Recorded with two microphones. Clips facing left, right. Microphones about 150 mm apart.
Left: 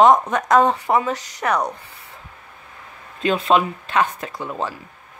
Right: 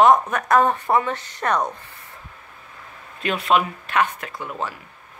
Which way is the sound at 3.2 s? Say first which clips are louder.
Left 3 dB; 30° left (ahead or behind).